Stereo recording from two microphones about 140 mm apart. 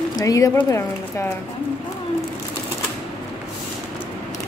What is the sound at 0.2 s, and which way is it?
Speech, 25° left (ahead or behind).